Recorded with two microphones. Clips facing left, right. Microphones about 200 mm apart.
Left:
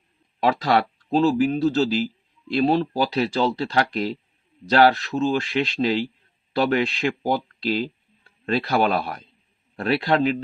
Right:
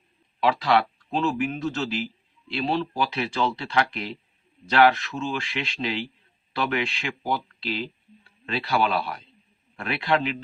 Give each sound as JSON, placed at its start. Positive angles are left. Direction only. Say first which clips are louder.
{"t": 0.3, "sound": "speech", "louder": "left 2 dB", "side_deg": 40}